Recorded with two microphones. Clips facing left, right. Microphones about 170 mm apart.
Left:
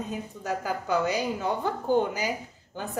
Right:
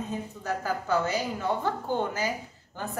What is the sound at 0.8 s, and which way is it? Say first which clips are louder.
Speech: left 2 dB; 15° left (ahead or behind).